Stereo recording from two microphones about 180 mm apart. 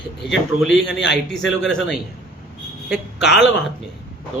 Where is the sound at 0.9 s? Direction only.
80° left.